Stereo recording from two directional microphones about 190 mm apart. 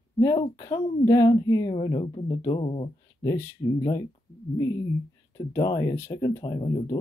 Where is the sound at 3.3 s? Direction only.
10° left (ahead or behind).